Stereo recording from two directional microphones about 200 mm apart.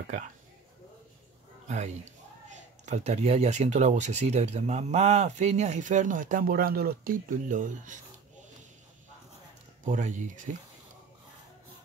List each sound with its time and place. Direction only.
1.7 s speech: 35° right (ahead or behind)
9.8 s speech: 40° right (ahead or behind)